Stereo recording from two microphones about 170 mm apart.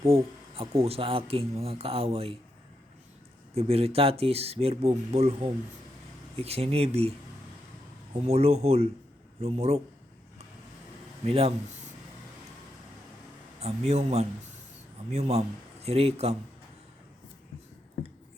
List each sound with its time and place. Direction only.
0.0 s speech: 35° right (ahead or behind)
3.5 s speech: 35° right (ahead or behind)
8.2 s speech: 40° right (ahead or behind)
11.3 s speech: 35° right (ahead or behind)
13.6 s a man's voice: 40° right (ahead or behind)